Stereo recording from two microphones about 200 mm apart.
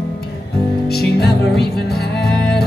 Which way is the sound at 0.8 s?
50° left (ahead or behind).